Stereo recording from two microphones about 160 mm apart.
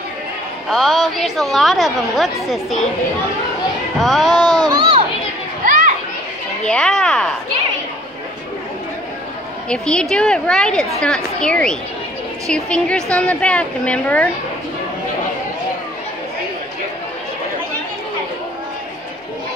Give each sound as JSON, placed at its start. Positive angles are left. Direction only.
{"t": 0.7, "sound": "a woman's voice", "side_deg": 0}
{"t": 4.0, "sound": "a woman's voice", "side_deg": 0}
{"t": 4.4, "sound": "a sound", "side_deg": -25}
{"t": 6.6, "sound": "a woman's voice", "side_deg": 5}
{"t": 9.7, "sound": "a woman's voice", "side_deg": 5}